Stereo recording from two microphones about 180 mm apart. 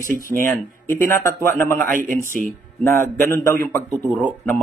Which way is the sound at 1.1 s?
15° left (ahead or behind).